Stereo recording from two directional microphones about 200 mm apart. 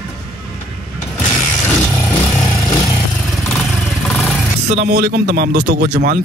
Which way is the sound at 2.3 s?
20° left (ahead or behind).